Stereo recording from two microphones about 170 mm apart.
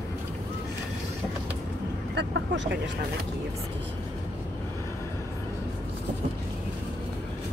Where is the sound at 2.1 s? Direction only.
90° right.